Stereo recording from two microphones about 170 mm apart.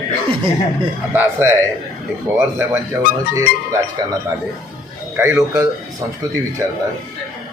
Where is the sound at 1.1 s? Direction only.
10° right (ahead or behind).